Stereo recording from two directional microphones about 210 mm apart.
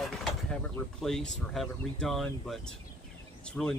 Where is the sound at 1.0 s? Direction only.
Centre (ahead or behind).